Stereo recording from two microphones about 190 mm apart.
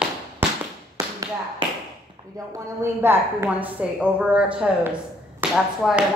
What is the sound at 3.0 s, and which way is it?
A woman's voice, 10° right (ahead or behind).